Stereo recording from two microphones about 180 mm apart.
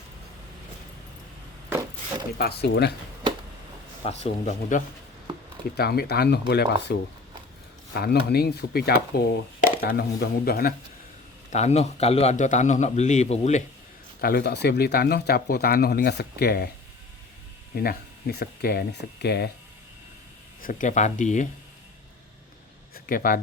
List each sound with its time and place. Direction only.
2.4 s speech: 65° left (ahead or behind)
4.2 s a man's voice: 40° left (ahead or behind)
5.7 s speech: 60° left (ahead or behind)
7.9 s speech: 65° left (ahead or behind)
11.5 s a man's voice: 35° left (ahead or behind)
14.2 s speech: 60° left (ahead or behind)
17.7 s speech: 60° left (ahead or behind)
20.6 s speech: 50° left (ahead or behind)
23.0 s speech: 55° left (ahead or behind)